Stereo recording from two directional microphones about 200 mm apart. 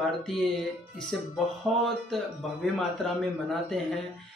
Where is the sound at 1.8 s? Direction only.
Centre (ahead or behind).